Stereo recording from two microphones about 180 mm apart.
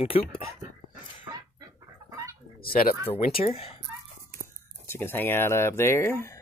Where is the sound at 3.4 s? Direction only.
35° left (ahead or behind).